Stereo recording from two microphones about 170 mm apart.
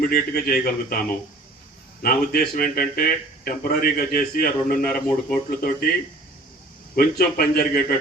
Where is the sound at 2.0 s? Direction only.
60° left (ahead or behind).